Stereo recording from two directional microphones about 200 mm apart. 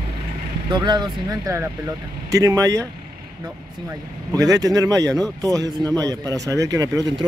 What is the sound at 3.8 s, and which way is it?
Speech, 20° right (ahead or behind).